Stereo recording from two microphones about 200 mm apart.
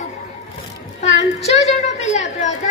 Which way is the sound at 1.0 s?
35° left (ahead or behind).